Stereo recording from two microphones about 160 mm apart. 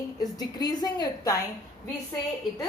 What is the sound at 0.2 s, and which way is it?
A woman's voice, 25° left (ahead or behind).